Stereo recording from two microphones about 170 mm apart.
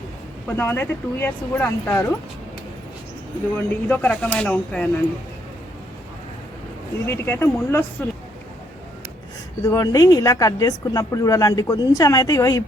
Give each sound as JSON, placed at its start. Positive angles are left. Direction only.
{"t": 0.4, "sound": "speech", "side_deg": 10}
{"t": 3.5, "sound": "speech", "side_deg": 10}
{"t": 7.1, "sound": "speech", "side_deg": 15}
{"t": 9.6, "sound": "speech", "side_deg": 20}